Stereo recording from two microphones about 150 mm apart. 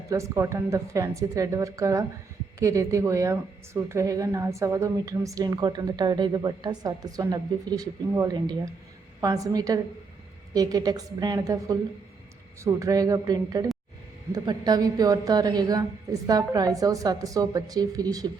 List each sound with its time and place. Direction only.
0.1 s a woman's voice: 20° right (ahead or behind)